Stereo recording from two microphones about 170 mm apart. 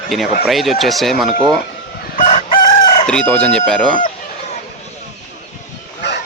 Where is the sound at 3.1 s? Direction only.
5° left (ahead or behind).